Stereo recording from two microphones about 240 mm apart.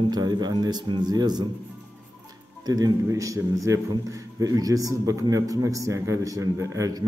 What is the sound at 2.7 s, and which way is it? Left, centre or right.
A man's voice, centre.